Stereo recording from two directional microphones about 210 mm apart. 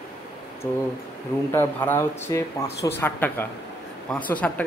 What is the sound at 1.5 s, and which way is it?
Speech, 10° left (ahead or behind).